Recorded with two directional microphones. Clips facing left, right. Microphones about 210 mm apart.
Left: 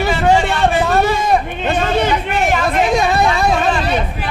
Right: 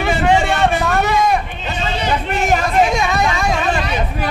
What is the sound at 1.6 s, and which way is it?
Chatter, 55° left (ahead or behind).